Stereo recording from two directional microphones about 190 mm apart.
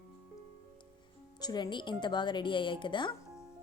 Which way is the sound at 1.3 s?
20° left (ahead or behind).